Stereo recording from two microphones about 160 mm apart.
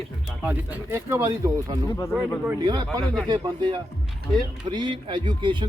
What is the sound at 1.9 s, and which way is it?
Speech, 20° left (ahead or behind).